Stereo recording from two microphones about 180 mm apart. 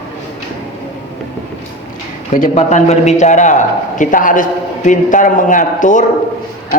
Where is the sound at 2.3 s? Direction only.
45° left (ahead or behind).